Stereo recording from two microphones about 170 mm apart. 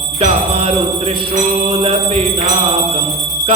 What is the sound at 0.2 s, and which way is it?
Jingle bell, 40° right (ahead or behind).